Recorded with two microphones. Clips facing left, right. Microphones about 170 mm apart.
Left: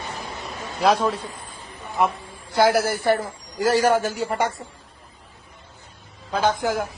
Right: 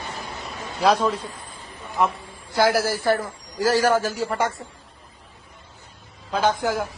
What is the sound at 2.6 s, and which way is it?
Speech, 55° left (ahead or behind).